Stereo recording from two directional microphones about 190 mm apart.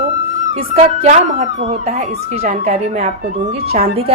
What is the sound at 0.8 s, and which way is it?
Speech, 40° right (ahead or behind).